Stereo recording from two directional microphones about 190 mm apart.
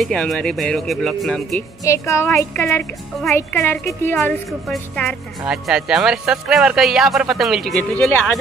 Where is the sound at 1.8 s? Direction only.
15° left (ahead or behind).